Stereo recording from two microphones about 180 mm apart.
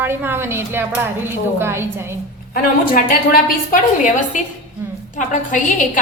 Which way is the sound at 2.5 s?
50° left (ahead or behind).